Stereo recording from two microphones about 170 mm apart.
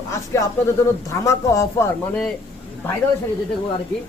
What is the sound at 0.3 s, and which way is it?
Speech, 15° left (ahead or behind).